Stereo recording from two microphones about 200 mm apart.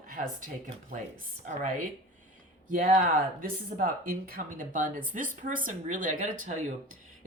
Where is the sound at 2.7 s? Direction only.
40° right (ahead or behind).